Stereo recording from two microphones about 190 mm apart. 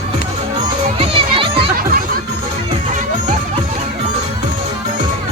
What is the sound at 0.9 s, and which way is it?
Children playing, 30° right (ahead or behind).